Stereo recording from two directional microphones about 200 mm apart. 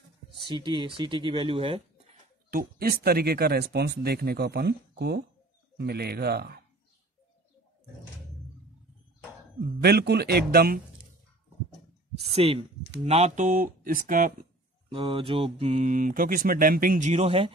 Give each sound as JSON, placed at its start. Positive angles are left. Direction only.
{"t": 0.5, "sound": "speech", "side_deg": -25}
{"t": 2.5, "sound": "speech", "side_deg": -50}
{"t": 9.8, "sound": "speech", "side_deg": -50}
{"t": 12.2, "sound": "speech", "side_deg": -30}
{"t": 14.9, "sound": "speech", "side_deg": -25}